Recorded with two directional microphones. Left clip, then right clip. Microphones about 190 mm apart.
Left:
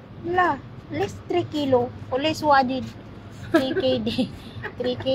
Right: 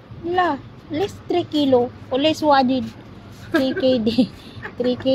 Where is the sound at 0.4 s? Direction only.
30° right (ahead or behind).